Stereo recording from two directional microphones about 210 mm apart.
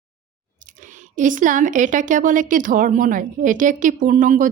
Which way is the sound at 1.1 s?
40° right (ahead or behind).